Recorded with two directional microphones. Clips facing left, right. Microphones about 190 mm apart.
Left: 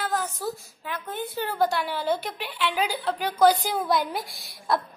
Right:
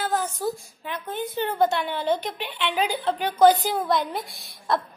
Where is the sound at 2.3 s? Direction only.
5° left (ahead or behind).